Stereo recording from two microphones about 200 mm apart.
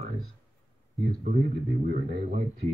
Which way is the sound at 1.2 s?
35° right (ahead or behind).